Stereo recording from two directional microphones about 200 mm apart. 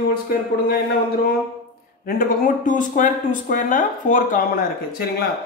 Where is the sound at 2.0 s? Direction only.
45° left (ahead or behind).